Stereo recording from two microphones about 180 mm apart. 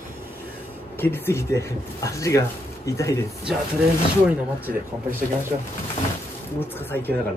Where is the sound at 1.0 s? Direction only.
15° left (ahead or behind).